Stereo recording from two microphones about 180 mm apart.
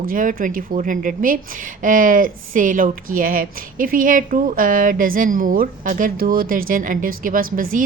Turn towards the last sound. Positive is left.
turn(degrees=-50)  # may be behind; listen again after turning